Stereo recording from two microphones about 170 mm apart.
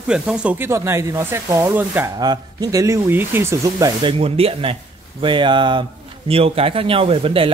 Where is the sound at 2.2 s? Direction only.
25° right (ahead or behind).